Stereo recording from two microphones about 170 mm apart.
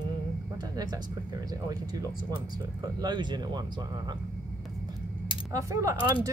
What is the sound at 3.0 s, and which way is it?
Speech, 25° right (ahead or behind).